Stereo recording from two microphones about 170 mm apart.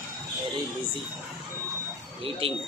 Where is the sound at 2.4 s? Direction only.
35° right (ahead or behind).